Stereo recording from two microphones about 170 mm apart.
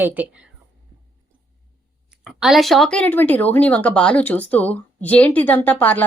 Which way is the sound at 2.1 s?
Centre (ahead or behind).